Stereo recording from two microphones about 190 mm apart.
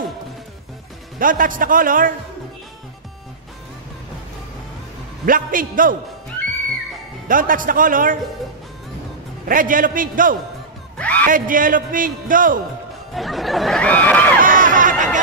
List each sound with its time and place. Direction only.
1.2 s a man's voice: 45° right (ahead or behind)
5.2 s a man's voice: 45° right (ahead or behind)
7.2 s a man's voice: 45° right (ahead or behind)
9.5 s a man's voice: 45° right (ahead or behind)
11.0 s music: 5° left (ahead or behind)
11.2 s a man's voice: 45° right (ahead or behind)
13.1 s snicker: centre (ahead or behind)
14.4 s a sound: 45° right (ahead or behind)